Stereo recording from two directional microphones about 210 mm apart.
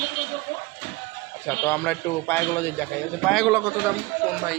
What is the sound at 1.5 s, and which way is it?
A man's voice, 10° left (ahead or behind).